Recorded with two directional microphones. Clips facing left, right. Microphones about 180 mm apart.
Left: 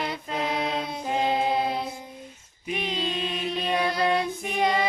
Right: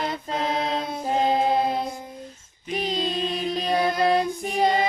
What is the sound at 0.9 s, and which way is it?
Music, 40° right (ahead or behind).